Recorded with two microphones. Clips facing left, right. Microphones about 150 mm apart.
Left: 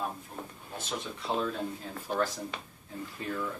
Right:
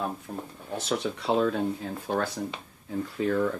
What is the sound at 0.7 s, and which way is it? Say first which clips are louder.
Speech: right 8 dB; 80° right.